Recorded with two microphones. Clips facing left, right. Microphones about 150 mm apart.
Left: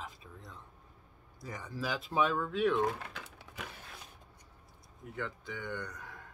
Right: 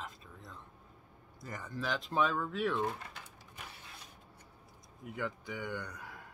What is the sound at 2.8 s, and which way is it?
Typewriter, 85° left.